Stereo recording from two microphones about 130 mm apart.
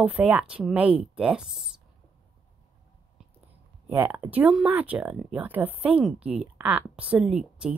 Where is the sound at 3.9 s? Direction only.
15° right (ahead or behind).